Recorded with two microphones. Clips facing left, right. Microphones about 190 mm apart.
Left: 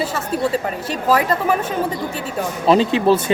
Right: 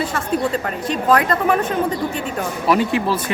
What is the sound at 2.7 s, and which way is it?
Speech, 25° left (ahead or behind).